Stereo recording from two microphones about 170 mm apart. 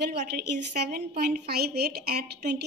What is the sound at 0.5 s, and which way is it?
Speech, 75° right (ahead or behind).